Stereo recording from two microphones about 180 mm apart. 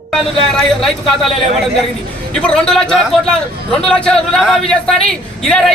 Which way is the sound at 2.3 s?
5° left (ahead or behind).